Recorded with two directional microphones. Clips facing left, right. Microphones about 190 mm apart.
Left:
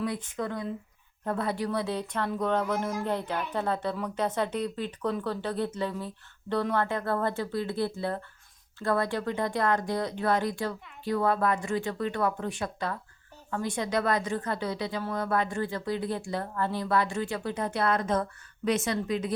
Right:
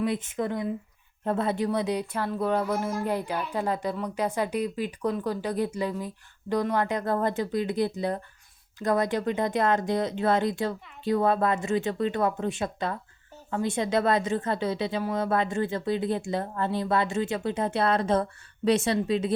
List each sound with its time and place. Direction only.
0.0 s speech: 20° right (ahead or behind)